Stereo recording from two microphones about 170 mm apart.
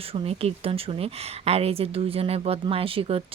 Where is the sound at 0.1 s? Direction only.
35° right (ahead or behind).